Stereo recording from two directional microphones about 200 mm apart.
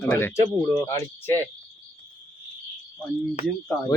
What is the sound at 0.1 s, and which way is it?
Speech, 10° left (ahead or behind).